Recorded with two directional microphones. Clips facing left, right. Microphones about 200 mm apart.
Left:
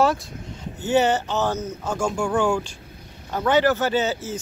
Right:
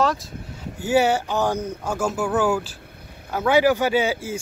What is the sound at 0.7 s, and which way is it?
Speech, 10° right (ahead or behind).